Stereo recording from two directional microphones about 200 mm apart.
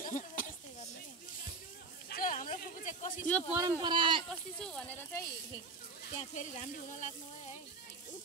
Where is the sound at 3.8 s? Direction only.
25° right (ahead or behind).